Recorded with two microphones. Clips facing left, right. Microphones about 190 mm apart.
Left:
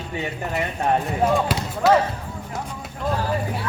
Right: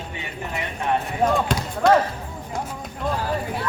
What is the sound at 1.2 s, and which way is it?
Speech, 5° left (ahead or behind).